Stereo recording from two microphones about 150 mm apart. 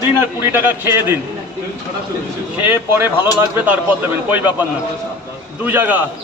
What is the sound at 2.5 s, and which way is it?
A man's voice, 15° right (ahead or behind).